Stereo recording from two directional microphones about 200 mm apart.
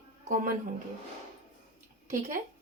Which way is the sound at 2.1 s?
40° right (ahead or behind).